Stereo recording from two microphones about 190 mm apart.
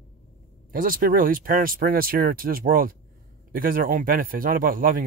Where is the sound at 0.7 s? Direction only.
45° right (ahead or behind).